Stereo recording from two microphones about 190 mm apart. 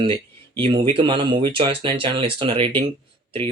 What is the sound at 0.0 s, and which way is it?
Speech, 30° right (ahead or behind).